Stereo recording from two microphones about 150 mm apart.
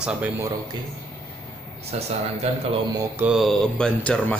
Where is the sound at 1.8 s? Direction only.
45° right (ahead or behind).